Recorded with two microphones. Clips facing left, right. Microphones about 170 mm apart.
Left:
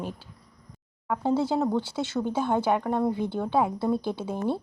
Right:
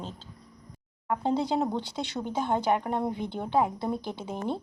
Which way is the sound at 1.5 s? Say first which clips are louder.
Left 3 dB; 20° right (ahead or behind).